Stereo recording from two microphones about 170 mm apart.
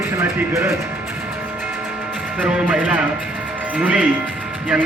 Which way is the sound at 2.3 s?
10° right (ahead or behind).